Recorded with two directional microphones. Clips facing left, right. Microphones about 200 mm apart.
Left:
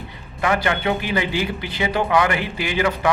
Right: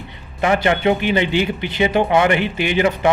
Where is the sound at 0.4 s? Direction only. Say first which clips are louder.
Right 4 dB; 25° right (ahead or behind).